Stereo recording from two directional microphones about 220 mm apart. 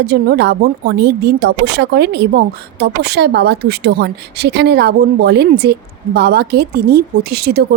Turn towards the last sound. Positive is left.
turn(degrees=-45)  # may be behind; listen again after turning